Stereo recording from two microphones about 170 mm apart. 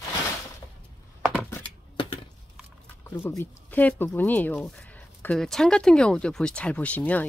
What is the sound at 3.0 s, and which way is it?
Speech, 15° left (ahead or behind).